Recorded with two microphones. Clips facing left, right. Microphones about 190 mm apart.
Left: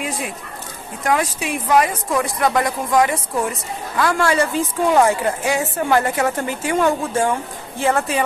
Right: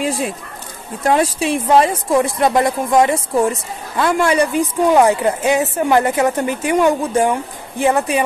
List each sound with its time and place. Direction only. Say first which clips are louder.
0.0 s speech: right 6 dB; 30° right (ahead or behind)